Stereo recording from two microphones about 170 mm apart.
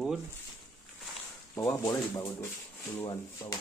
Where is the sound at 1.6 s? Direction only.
20° left (ahead or behind).